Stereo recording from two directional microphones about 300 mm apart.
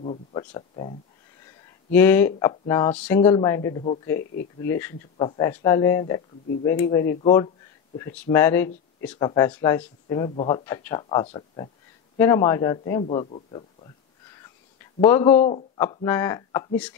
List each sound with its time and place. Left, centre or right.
0.0 s speech: centre
14.8 s speech: centre
15.3 s speech: left